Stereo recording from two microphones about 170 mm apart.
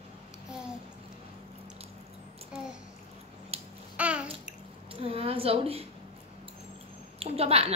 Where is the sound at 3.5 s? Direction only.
35° right (ahead or behind).